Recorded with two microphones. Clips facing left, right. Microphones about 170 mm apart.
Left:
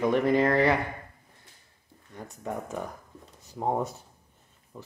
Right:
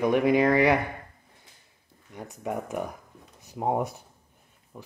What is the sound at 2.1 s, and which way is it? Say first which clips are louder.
Speech: right 3 dB; 15° right (ahead or behind).